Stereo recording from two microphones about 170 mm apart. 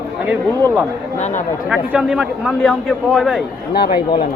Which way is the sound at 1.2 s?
45° left (ahead or behind).